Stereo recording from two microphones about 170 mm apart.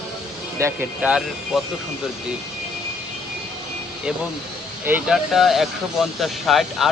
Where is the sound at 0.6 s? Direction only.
10° right (ahead or behind).